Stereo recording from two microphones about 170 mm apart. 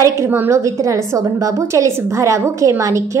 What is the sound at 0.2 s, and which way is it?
A woman's voice, 15° right (ahead or behind).